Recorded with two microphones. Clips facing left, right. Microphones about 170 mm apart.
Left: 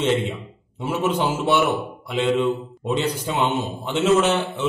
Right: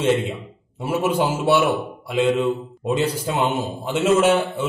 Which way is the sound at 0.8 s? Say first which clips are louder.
Right 1 dB; 10° right (ahead or behind).